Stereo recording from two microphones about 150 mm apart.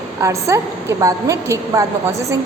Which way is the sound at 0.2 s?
20° right (ahead or behind).